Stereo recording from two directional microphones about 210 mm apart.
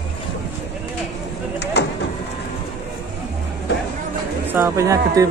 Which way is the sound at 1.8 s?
55° left (ahead or behind).